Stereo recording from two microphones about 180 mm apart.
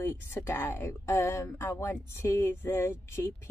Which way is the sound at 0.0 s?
15° left (ahead or behind).